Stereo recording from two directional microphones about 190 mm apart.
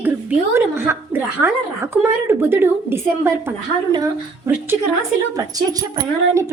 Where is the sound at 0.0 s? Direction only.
10° right (ahead or behind).